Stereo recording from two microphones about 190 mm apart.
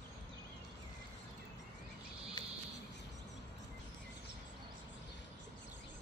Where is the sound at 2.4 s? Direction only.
20° left (ahead or behind).